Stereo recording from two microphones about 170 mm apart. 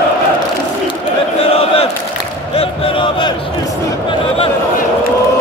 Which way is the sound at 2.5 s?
30° left (ahead or behind).